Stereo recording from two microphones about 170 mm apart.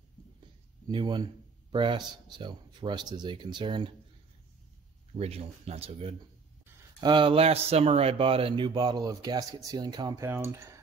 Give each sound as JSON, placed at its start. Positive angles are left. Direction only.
{"t": 0.8, "sound": "speech", "side_deg": -25}
{"t": 5.1, "sound": "speech", "side_deg": -35}